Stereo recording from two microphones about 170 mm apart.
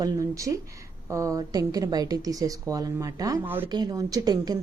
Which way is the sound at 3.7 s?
25° right (ahead or behind).